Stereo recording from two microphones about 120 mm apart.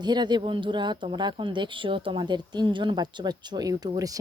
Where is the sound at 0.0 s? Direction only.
35° right (ahead or behind).